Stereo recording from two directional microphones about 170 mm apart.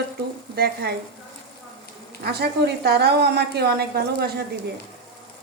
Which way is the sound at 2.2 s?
70° right (ahead or behind).